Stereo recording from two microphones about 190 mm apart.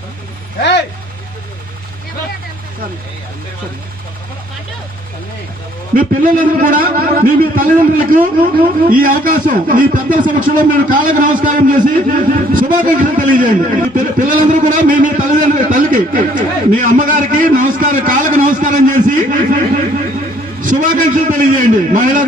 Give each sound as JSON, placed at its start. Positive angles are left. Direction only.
{"t": 0.6, "sound": "vehicle", "side_deg": 65}
{"t": 5.9, "sound": "a man's voice", "side_deg": -45}
{"t": 20.6, "sound": "a man's voice", "side_deg": -40}